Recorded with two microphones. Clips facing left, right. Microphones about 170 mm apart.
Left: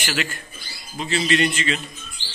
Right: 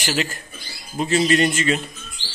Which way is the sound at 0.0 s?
40° right (ahead or behind).